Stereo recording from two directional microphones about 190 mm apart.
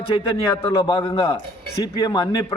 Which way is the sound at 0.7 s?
25° left (ahead or behind).